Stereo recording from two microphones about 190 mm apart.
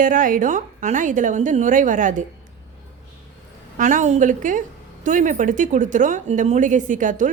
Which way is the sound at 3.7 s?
40° right (ahead or behind).